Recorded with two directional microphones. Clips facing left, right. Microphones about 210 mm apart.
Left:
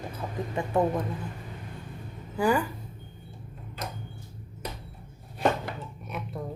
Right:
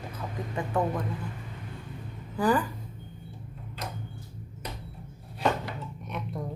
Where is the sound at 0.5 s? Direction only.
25° left (ahead or behind).